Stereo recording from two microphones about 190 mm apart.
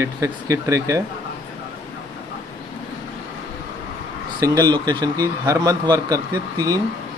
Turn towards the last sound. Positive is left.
turn(degrees=-20)  # may be behind; listen again after turning